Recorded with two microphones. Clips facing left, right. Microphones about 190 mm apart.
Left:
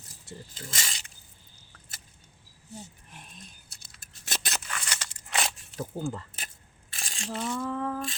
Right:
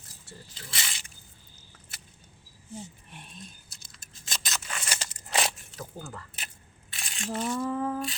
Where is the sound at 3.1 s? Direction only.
Centre (ahead or behind).